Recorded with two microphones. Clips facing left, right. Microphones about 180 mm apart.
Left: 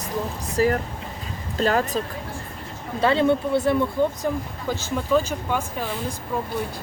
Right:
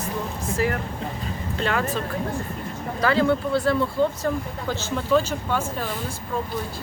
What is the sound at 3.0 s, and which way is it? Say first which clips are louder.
Speech: left 1 dB; 25° left (ahead or behind).